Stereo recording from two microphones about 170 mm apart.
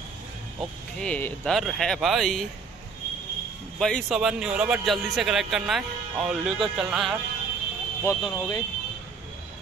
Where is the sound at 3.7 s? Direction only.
5° left (ahead or behind).